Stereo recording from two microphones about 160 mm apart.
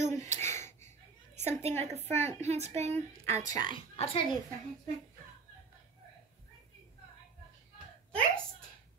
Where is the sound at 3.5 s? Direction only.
25° left (ahead or behind).